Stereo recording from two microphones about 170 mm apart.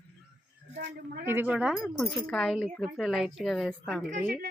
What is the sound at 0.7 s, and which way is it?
Speech, 65° right (ahead or behind).